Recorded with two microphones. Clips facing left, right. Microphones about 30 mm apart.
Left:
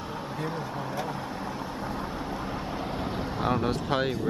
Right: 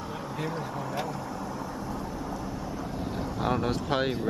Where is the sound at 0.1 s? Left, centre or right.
Centre.